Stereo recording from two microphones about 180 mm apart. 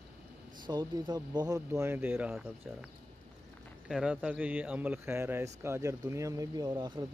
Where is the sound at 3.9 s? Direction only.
5° right (ahead or behind).